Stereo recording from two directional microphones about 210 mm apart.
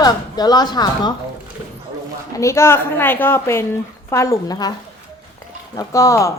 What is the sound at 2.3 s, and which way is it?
A man's voice, 15° left (ahead or behind).